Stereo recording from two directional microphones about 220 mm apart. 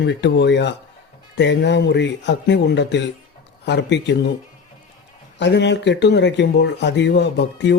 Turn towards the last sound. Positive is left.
turn(degrees=50)  # may be behind; listen again after turning